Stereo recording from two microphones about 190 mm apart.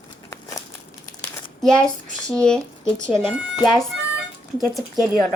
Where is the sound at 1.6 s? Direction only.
5° left (ahead or behind).